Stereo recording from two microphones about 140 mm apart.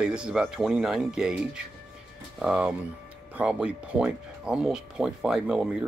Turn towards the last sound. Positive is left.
turn(degrees=-5)  # may be behind; listen again after turning